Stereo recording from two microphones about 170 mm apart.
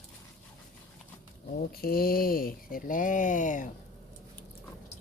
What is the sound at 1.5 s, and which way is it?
Speech, 60° left (ahead or behind).